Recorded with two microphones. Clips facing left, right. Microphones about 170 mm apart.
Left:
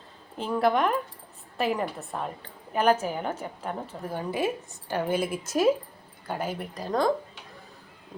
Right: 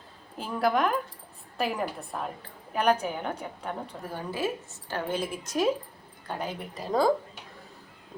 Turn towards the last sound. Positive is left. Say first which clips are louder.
# right 1 dB
turn(degrees=-5)  # may be behind; listen again after turning